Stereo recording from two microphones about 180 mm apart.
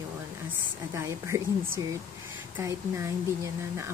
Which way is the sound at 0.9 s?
15° right (ahead or behind).